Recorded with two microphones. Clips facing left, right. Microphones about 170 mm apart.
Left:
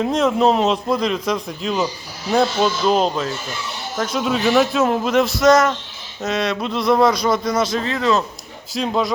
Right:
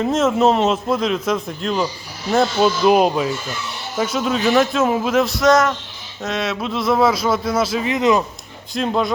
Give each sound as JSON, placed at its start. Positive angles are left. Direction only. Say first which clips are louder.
{"t": 0.0, "sound": "speech", "louder": "right 1 dB", "side_deg": 0}
{"t": 7.9, "sound": "speech", "louder": "right 5 dB", "side_deg": -15}
{"t": 8.7, "sound": "speech", "louder": "right 1 dB", "side_deg": 0}